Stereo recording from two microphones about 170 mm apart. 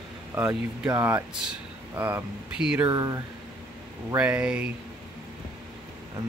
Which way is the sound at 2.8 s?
20° right (ahead or behind).